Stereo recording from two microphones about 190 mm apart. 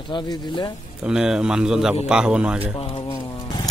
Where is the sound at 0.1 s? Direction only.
25° left (ahead or behind).